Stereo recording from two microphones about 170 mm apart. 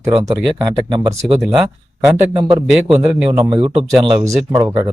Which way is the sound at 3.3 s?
25° right (ahead or behind).